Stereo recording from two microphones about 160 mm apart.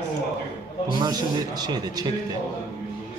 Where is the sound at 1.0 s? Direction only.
25° right (ahead or behind).